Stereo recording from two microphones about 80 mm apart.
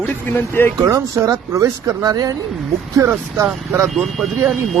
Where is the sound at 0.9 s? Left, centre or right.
Right.